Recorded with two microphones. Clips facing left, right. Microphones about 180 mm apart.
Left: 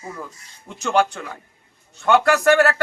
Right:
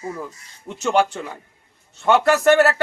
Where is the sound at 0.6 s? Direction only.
25° right (ahead or behind).